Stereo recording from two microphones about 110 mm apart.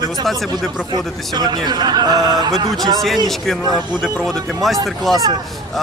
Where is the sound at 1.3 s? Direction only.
40° right (ahead or behind).